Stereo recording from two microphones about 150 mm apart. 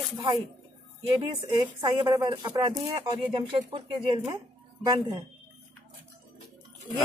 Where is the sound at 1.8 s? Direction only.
30° right (ahead or behind).